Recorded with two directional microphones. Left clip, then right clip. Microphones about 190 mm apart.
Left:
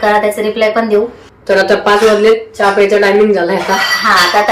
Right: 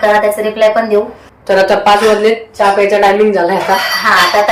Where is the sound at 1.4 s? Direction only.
15° right (ahead or behind).